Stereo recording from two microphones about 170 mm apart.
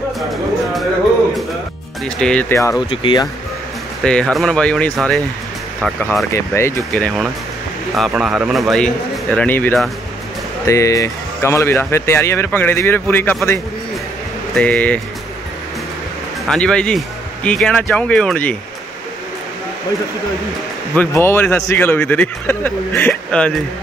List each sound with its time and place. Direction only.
2.0 s speech: 5° left (ahead or behind)
2.5 s speech: 15° left (ahead or behind)
2.9 s speech: 30° left (ahead or behind)
4.0 s speech: 5° left (ahead or behind)
6.3 s speech: 15° left (ahead or behind)
6.9 s speech: 5° left (ahead or behind)
14.6 s speech: 10° left (ahead or behind)
16.4 s speech: 5° left (ahead or behind)
20.9 s speech: 10° left (ahead or behind)